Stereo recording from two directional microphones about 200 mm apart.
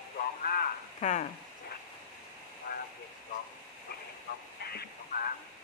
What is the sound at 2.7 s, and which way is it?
Vehicle, 45° left (ahead or behind).